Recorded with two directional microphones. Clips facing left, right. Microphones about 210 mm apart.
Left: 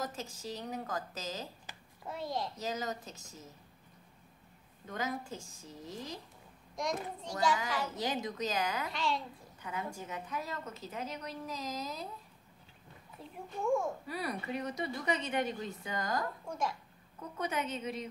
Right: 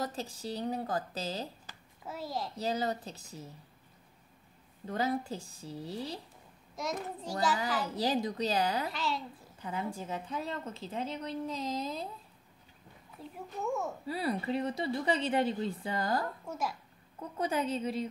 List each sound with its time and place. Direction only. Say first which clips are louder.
0.0 s a woman's voice: right 3 dB; 35° right (ahead or behind)
2.0 s a child's voice: even; 5° right (ahead or behind)
2.5 s a woman's voice: right 5 dB; 35° right (ahead or behind)
4.8 s a woman's voice: right 6 dB; 35° right (ahead or behind)
6.7 s a child's voice: even; 5° right (ahead or behind)
7.8 s a woman's voice: right 4 dB; 35° right (ahead or behind)
8.9 s a child's voice: even; centre (ahead or behind)
9.6 s a woman's voice: right 3 dB; 30° right (ahead or behind)
13.2 s a child's voice: even; 5° right (ahead or behind)
14.0 s a woman's voice: right 5 dB; 30° right (ahead or behind)
16.4 s a child's voice: even; 5° right (ahead or behind)
17.4 s a woman's voice: right 4 dB; 30° right (ahead or behind)